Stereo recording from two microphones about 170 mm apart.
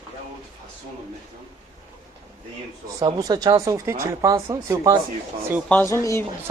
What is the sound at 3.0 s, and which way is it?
Speech, 20° right (ahead or behind).